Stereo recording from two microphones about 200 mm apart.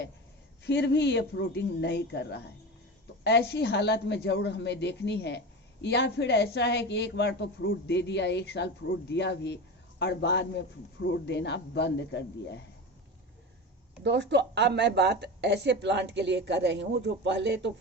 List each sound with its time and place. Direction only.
0.6 s a woman's voice: 60° left (ahead or behind)
14.0 s speech: 55° right (ahead or behind)